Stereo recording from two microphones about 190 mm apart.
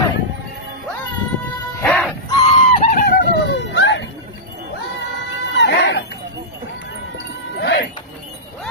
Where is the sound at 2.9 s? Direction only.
60° left (ahead or behind).